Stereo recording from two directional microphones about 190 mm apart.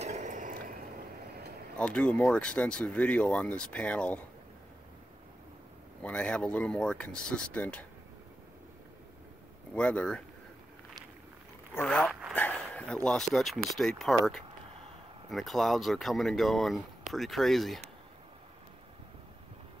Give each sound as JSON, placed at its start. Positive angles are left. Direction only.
{"t": 0.0, "sound": "a sound", "side_deg": -40}
{"t": 1.8, "sound": "speech", "side_deg": 5}
{"t": 6.0, "sound": "speech", "side_deg": 5}
{"t": 9.8, "sound": "speech", "side_deg": 5}
{"t": 11.7, "sound": "speech", "side_deg": 5}
{"t": 15.2, "sound": "speech", "side_deg": 0}